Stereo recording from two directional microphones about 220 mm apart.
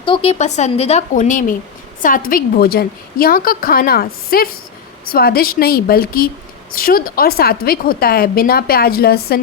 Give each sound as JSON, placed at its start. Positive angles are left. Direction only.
{"t": 0.0, "sound": "a woman's voice", "side_deg": 25}